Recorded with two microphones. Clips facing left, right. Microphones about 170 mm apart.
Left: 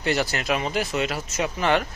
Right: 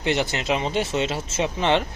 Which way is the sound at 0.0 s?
20° right (ahead or behind).